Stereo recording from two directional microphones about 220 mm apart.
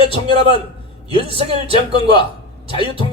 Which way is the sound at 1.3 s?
25° right (ahead or behind).